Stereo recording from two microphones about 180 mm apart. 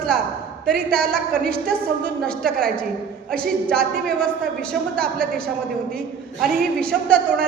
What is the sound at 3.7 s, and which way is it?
A man's voice, 5° left (ahead or behind).